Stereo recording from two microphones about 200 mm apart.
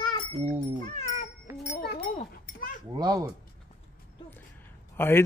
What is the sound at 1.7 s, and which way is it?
Livestock, 55° left (ahead or behind).